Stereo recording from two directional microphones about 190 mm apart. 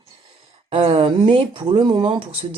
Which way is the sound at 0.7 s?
30° right (ahead or behind).